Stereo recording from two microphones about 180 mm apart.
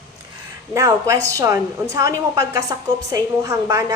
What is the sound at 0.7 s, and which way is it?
A woman's voice, 20° right (ahead or behind).